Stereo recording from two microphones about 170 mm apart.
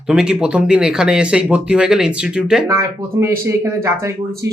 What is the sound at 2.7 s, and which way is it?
Speech, 15° right (ahead or behind).